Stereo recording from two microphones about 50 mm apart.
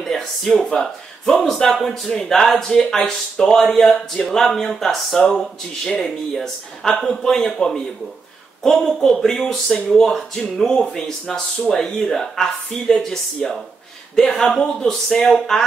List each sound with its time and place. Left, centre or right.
0.0 s speech: centre
14.9 s speech: centre